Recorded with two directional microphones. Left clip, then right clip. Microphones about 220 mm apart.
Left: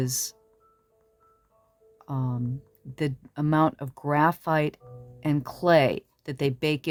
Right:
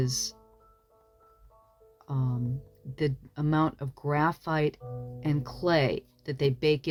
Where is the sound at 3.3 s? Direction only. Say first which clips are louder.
Left 7 dB; 35° left (ahead or behind).